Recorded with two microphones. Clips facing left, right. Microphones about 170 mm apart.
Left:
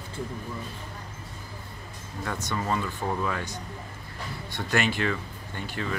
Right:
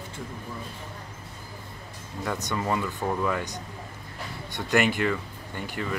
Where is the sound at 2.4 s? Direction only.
15° right (ahead or behind).